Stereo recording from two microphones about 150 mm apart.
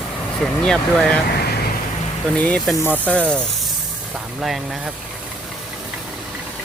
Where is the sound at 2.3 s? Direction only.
10° left (ahead or behind).